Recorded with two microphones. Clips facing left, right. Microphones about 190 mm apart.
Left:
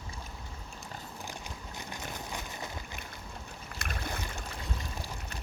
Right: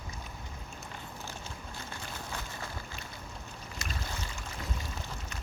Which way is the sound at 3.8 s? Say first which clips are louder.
Left 3 dB; 60° left (ahead or behind).